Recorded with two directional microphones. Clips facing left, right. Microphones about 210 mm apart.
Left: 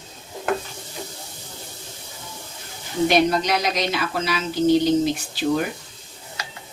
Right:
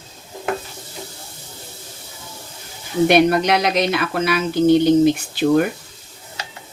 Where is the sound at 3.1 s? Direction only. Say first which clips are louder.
Right 5 dB; 60° right (ahead or behind).